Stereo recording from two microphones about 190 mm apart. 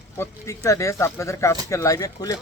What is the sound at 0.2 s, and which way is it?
Speech, 15° left (ahead or behind).